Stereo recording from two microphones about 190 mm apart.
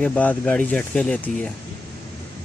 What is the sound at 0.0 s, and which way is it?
Speech, 5° left (ahead or behind).